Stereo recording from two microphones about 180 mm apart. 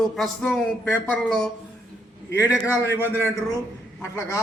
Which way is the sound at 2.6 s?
15° left (ahead or behind).